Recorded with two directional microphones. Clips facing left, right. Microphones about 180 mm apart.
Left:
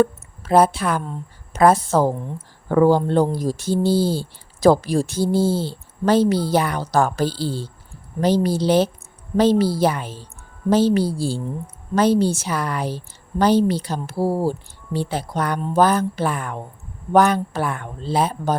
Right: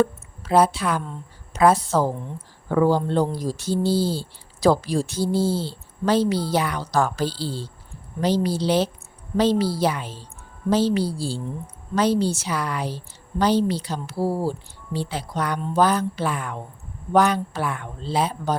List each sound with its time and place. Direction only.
0.0 s speech: 50° left (ahead or behind)